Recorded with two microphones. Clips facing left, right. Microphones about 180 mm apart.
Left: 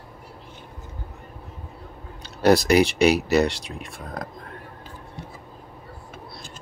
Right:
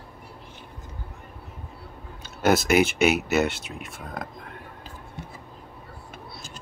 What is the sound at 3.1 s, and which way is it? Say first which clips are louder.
Speech: left 3 dB; 35° left (ahead or behind).